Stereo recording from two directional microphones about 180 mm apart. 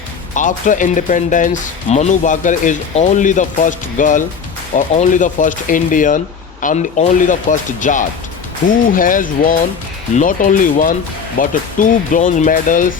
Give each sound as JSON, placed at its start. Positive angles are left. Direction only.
{"t": 0.3, "sound": "speech", "side_deg": 45}